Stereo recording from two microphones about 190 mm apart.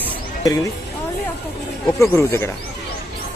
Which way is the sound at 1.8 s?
10° left (ahead or behind).